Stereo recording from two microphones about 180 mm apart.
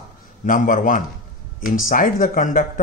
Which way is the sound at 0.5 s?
45° left (ahead or behind).